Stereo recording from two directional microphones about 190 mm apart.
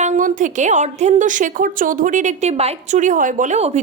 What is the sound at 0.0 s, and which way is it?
A woman's voice, 40° right (ahead or behind).